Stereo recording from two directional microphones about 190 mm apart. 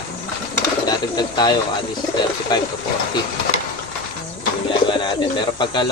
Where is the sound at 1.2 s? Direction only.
20° left (ahead or behind).